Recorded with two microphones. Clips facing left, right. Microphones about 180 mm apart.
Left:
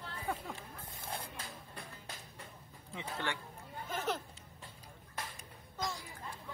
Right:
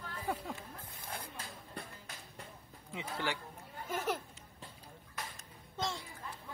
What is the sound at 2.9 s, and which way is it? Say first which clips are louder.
Speech: right 1 dB; 10° right (ahead or behind).